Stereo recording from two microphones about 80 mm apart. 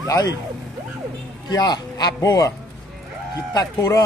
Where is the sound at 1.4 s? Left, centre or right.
Left.